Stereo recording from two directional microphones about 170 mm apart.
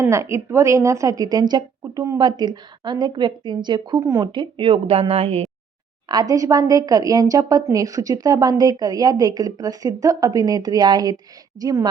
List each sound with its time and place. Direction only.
0.0 s a woman's voice: 15° right (ahead or behind); by 5.5 s 35° right (ahead or behind)
6.1 s a woman's voice: 20° right (ahead or behind)